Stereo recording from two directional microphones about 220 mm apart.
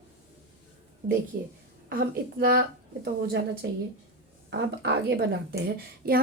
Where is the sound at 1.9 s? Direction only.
45° right (ahead or behind).